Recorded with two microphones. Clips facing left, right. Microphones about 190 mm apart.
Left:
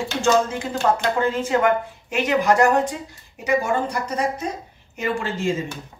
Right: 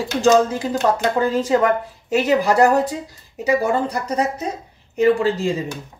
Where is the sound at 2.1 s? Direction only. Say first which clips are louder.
Right 2 dB; 35° right (ahead or behind).